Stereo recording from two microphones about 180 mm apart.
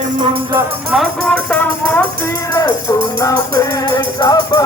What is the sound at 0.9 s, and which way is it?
Speech, centre (ahead or behind).